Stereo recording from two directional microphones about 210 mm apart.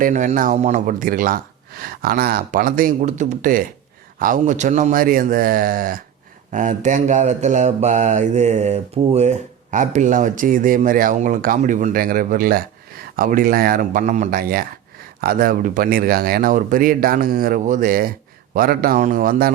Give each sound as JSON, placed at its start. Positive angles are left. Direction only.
{"t": 0.0, "sound": "speech", "side_deg": -35}